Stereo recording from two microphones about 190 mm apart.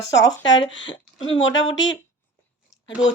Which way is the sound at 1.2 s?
90° left.